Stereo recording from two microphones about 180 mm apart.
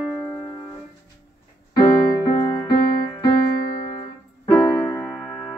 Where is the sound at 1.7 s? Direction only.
20° left (ahead or behind).